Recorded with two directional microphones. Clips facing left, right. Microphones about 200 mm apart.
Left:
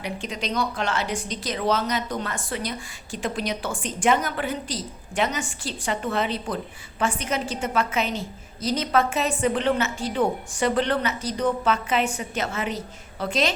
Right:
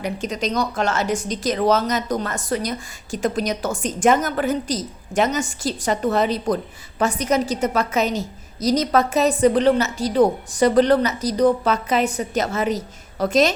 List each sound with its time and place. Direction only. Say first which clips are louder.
0.0 s a woman's voice: right 6 dB; 45° right (ahead or behind)